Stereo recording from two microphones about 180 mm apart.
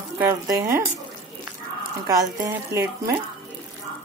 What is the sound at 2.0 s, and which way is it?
Speech, 20° right (ahead or behind).